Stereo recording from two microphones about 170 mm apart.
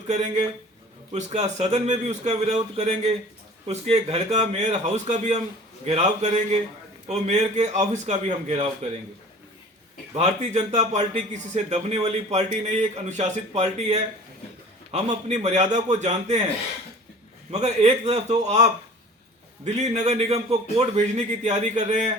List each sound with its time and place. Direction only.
0.1 s a man's voice: 40° right (ahead or behind)
10.2 s a man's voice: 40° right (ahead or behind)
17.5 s a man's voice: 40° right (ahead or behind)